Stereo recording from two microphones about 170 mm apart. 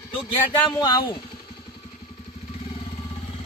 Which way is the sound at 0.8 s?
25° left (ahead or behind).